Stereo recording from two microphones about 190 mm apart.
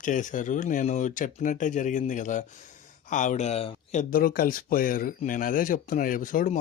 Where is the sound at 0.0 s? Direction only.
45° left (ahead or behind).